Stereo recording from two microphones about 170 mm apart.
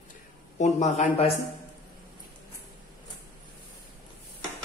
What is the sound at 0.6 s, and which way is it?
Speech, 45° left (ahead or behind).